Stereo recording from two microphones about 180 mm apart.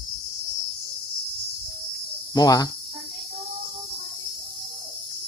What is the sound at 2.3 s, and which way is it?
Speech, 20° left (ahead or behind).